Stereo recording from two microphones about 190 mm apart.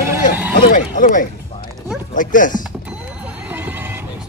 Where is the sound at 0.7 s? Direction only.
45° left (ahead or behind).